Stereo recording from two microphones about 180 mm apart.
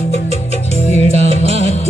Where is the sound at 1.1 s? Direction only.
35° right (ahead or behind).